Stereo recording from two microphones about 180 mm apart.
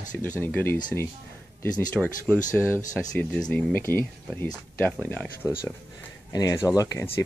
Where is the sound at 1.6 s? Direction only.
10° left (ahead or behind).